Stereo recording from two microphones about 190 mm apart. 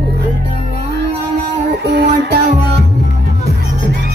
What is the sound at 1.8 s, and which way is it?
Music, 60° right (ahead or behind).